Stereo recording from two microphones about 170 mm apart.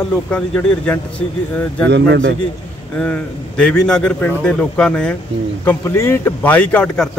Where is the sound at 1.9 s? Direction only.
85° right.